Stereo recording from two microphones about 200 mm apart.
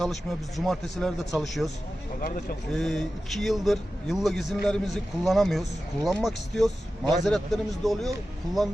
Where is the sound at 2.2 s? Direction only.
45° left (ahead or behind).